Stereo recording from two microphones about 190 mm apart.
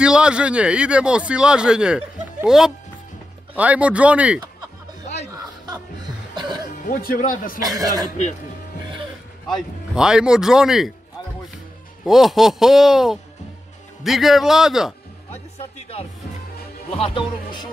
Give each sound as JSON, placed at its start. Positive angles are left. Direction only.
{"t": 0.0, "sound": "speech", "side_deg": -5}
{"t": 5.0, "sound": "music", "side_deg": 35}
{"t": 6.3, "sound": "music", "side_deg": -25}
{"t": 6.9, "sound": "speech", "side_deg": 45}
{"t": 7.6, "sound": "speech", "side_deg": -20}
{"t": 9.5, "sound": "speech", "side_deg": -5}
{"t": 12.0, "sound": "speech", "side_deg": 0}
{"t": 17.0, "sound": "speech", "side_deg": 25}